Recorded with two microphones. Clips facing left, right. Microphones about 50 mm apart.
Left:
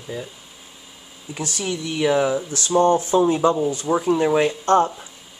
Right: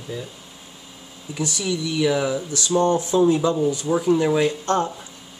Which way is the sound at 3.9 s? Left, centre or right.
Centre.